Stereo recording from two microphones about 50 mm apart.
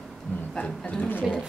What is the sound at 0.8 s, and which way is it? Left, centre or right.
Speech, left.